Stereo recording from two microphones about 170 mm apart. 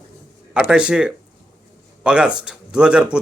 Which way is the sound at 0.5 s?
5° right (ahead or behind).